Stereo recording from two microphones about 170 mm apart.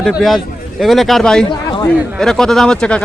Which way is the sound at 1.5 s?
30° left (ahead or behind).